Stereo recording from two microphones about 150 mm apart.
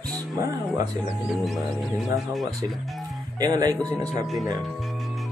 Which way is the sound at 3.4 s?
25° right (ahead or behind).